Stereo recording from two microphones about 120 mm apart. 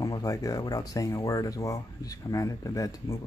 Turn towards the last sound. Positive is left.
turn(degrees=30)  # may be behind; listen again after turning